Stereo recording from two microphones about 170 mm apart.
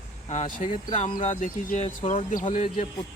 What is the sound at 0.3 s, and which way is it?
Speech, 45° left (ahead or behind).